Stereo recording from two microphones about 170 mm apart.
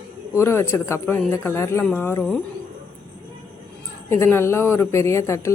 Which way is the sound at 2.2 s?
Centre (ahead or behind).